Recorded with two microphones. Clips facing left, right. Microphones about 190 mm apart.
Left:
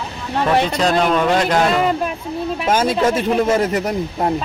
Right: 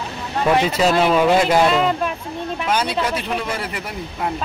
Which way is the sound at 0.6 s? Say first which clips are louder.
Even; 5° right (ahead or behind).